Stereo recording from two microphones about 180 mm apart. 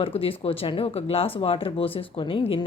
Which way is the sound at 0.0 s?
30° left (ahead or behind).